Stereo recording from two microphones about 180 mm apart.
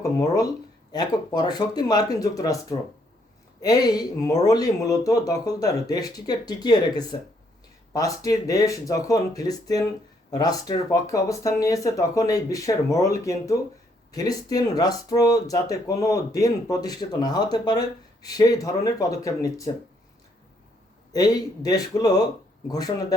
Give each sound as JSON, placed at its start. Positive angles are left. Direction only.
{"t": 0.0, "sound": "speech", "side_deg": 20}
{"t": 21.1, "sound": "speech", "side_deg": 20}